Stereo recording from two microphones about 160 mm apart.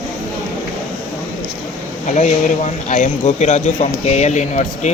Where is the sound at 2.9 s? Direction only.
45° left (ahead or behind).